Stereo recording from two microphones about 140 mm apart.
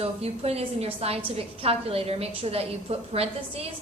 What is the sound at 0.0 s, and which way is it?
A woman's voice, 45° right (ahead or behind).